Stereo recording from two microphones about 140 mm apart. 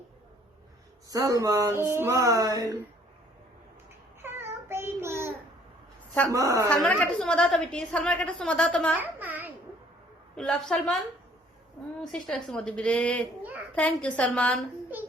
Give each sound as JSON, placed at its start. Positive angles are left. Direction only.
{"t": 1.1, "sound": "speech", "side_deg": -25}
{"t": 4.2, "sound": "a sound", "side_deg": -15}
{"t": 6.3, "sound": "speech", "side_deg": -25}
{"t": 6.7, "sound": "a woman's voice", "side_deg": 10}
{"t": 9.0, "sound": "a sound", "side_deg": -15}
{"t": 10.3, "sound": "a woman's voice", "side_deg": 5}